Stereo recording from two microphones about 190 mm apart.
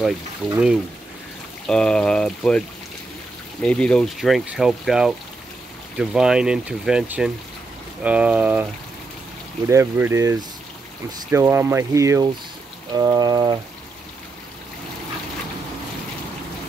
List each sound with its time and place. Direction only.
0.4 s speech: centre (ahead or behind)
1.7 s speech: 5° left (ahead or behind)
3.6 s speech: 5° left (ahead or behind)
9.7 s speech: 15° right (ahead or behind)
12.9 s music: 20° right (ahead or behind)